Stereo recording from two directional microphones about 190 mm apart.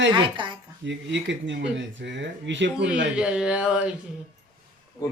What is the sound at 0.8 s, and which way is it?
Speech, 70° right (ahead or behind).